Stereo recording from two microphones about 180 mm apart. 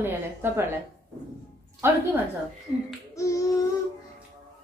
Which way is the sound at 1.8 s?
15° right (ahead or behind).